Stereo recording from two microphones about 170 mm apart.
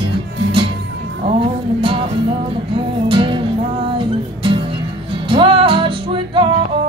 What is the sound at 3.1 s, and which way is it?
Music, 30° right (ahead or behind).